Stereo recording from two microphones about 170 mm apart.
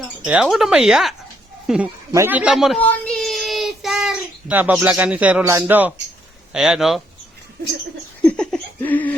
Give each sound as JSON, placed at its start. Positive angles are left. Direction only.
{"t": 0.3, "sound": "speech", "side_deg": -5}
{"t": 2.8, "sound": "child singing", "side_deg": 5}
{"t": 6.5, "sound": "speech", "side_deg": -5}
{"t": 8.2, "sound": "laughter", "side_deg": 5}